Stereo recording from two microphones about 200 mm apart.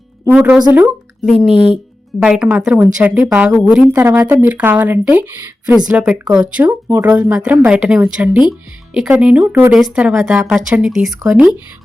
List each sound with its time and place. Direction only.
0.3 s a woman's voice: 5° right (ahead or behind)
1.5 s speech: 25° left (ahead or behind)
2.1 s a woman's voice: 5° right (ahead or behind)